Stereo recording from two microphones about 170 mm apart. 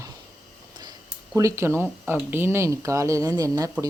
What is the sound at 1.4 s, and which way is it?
Speech, 15° right (ahead or behind).